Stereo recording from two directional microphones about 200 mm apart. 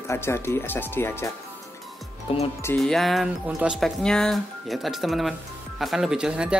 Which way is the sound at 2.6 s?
5° left (ahead or behind).